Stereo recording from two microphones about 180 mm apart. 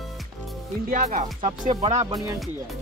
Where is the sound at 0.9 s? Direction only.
45° right (ahead or behind).